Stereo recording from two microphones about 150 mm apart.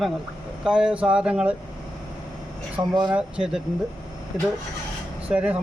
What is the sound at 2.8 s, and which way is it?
Speech, 25° right (ahead or behind).